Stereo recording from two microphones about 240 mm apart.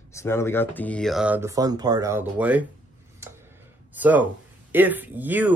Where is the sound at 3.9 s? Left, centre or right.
Centre.